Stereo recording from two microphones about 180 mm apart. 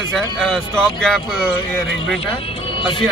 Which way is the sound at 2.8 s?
30° left (ahead or behind).